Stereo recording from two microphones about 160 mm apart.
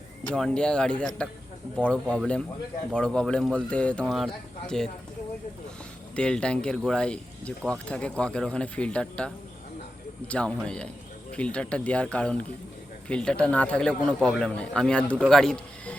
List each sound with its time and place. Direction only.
0.3 s speech: 5° left (ahead or behind)
6.1 s speech: 5° left (ahead or behind)